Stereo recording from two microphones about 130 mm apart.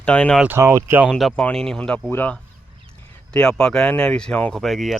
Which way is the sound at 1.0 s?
Centre (ahead or behind).